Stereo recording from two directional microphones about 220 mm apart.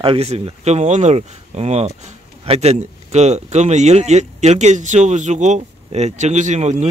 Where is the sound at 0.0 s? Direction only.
25° right (ahead or behind).